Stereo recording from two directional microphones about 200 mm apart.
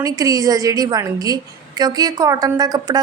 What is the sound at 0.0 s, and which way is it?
Speech, 15° right (ahead or behind).